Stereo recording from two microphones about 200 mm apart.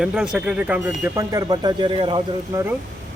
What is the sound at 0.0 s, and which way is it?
Speech, 5° right (ahead or behind).